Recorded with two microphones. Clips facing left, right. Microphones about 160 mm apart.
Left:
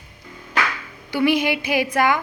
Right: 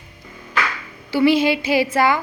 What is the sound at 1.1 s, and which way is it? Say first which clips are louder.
Speech: right 3 dB; 15° left (ahead or behind).